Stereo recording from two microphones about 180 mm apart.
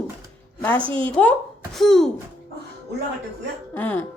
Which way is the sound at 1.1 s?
5° left (ahead or behind).